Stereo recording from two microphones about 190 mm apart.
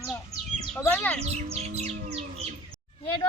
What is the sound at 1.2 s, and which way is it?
Bird, 35° right (ahead or behind).